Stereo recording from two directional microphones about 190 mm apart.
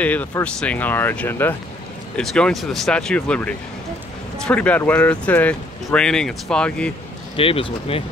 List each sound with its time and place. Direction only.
0.0 s speech: 10° left (ahead or behind)
7.3 s speech: 30° left (ahead or behind)